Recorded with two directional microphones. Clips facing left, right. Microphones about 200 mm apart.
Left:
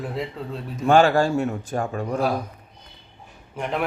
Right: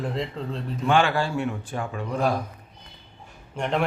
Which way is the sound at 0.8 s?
45° left (ahead or behind).